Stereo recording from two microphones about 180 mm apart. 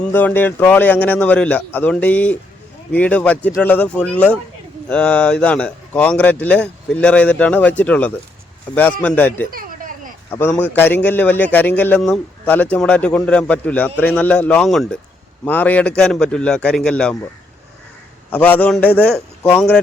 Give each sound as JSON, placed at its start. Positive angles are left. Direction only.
{"t": 0.0, "sound": "speech", "side_deg": 10}
{"t": 9.5, "sound": "a sound", "side_deg": -50}
{"t": 10.2, "sound": "a man's voice", "side_deg": 15}
{"t": 18.3, "sound": "speech", "side_deg": 10}